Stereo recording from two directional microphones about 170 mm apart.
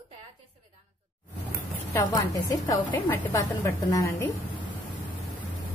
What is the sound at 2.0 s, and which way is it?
A woman's voice, 20° left (ahead or behind).